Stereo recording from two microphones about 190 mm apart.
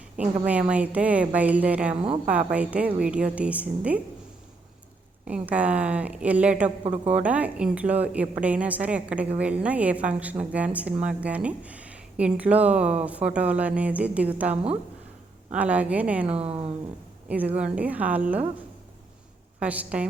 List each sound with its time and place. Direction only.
0.2 s speech: 5° right (ahead or behind)
5.3 s speech: 5° right (ahead or behind)
6.8 s speech: 35° right (ahead or behind)
7.1 s speech: 5° right (ahead or behind)
16.2 s speech: 30° right (ahead or behind)
17.2 s speech: 10° right (ahead or behind)
19.5 s speech: 10° right (ahead or behind)